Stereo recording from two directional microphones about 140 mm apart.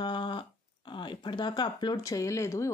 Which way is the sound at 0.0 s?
35° left (ahead or behind).